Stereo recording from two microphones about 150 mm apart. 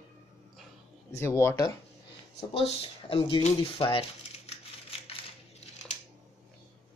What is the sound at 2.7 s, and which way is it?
Speech, 40° left (ahead or behind).